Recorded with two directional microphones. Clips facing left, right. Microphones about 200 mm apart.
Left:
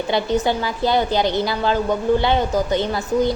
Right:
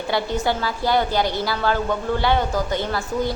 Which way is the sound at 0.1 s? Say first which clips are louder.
Left 2 dB; 20° left (ahead or behind).